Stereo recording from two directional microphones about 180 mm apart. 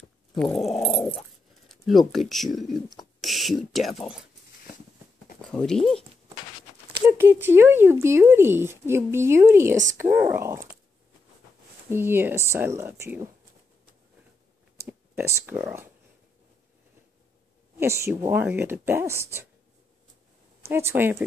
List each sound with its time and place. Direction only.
0.3 s growling: centre (ahead or behind)
0.7 s dog: 5° left (ahead or behind)
1.7 s speech: centre (ahead or behind)
5.4 s speech: 5° left (ahead or behind)
7.0 s speech: 10° right (ahead or behind)
11.9 s speech: 10° right (ahead or behind)
14.8 s clicking: 15° right (ahead or behind)
17.7 s speech: 15° right (ahead or behind)
20.6 s speech: 10° right (ahead or behind)